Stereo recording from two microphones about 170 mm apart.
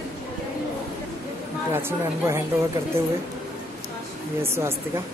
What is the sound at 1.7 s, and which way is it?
Speech, 15° right (ahead or behind).